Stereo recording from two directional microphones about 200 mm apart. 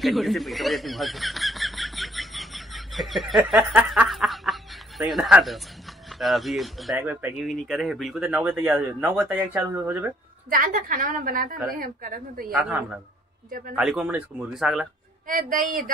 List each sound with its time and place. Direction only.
0.0 s snicker: centre (ahead or behind)
6.0 s speech: centre (ahead or behind)
10.5 s a woman's voice: 45° right (ahead or behind)
12.5 s speech: 5° right (ahead or behind)
15.2 s a woman's voice: 45° right (ahead or behind)